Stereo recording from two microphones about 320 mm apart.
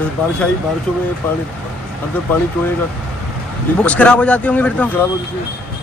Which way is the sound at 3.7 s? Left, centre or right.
Centre.